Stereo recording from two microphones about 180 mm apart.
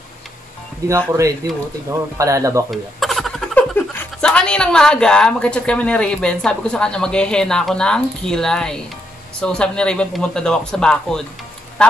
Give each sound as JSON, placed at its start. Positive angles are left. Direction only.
{"t": 0.8, "sound": "speech", "side_deg": -15}
{"t": 2.7, "sound": "speech", "side_deg": 0}
{"t": 11.8, "sound": "honk", "side_deg": 5}